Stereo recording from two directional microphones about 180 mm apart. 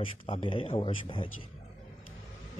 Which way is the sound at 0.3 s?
30° left (ahead or behind).